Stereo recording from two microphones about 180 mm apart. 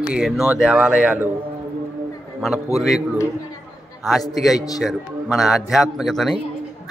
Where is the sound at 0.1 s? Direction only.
5° right (ahead or behind).